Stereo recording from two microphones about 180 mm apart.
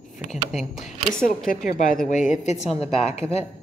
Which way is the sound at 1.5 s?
50° left (ahead or behind).